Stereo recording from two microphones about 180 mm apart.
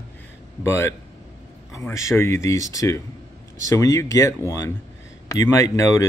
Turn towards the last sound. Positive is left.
turn(degrees=15)  # may be behind; listen again after turning